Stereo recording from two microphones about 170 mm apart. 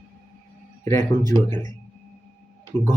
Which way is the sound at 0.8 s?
15° left (ahead or behind).